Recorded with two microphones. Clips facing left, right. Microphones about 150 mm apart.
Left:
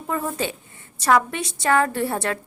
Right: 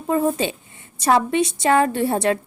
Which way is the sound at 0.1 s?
20° right (ahead or behind).